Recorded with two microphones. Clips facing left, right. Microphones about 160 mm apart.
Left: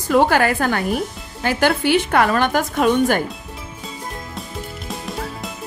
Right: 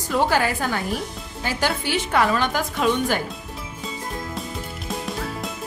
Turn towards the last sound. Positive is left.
turn(degrees=0)  # may be behind; listen again after turning